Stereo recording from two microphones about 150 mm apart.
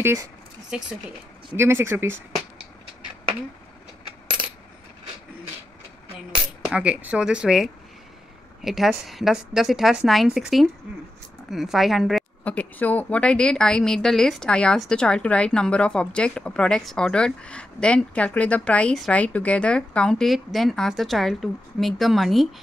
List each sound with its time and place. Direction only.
0.0 s speech: 15° right (ahead or behind)
1.6 s speech: 15° right (ahead or behind)
6.6 s a woman's voice: 10° right (ahead or behind)
12.4 s a woman's voice: 10° left (ahead or behind)